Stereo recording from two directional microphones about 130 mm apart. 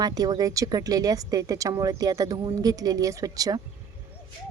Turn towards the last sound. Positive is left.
turn(degrees=-30)  # may be behind; listen again after turning